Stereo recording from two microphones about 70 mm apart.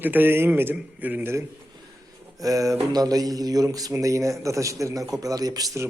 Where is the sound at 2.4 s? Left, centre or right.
Right.